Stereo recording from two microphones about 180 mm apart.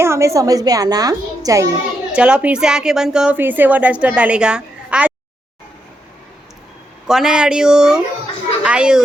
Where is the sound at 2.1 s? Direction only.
5° right (ahead or behind).